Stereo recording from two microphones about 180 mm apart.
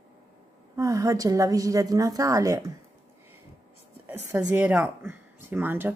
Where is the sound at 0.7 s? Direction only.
15° right (ahead or behind).